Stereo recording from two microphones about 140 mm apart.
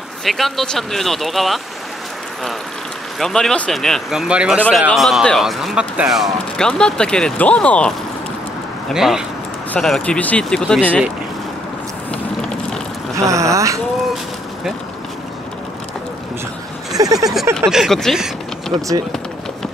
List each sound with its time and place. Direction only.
0.2 s speech: centre (ahead or behind)
3.2 s speech: 5° left (ahead or behind)
8.9 s speech: 5° right (ahead or behind)
13.3 s speech: 20° right (ahead or behind)
16.9 s a sound: 25° right (ahead or behind)
17.6 s speech: centre (ahead or behind)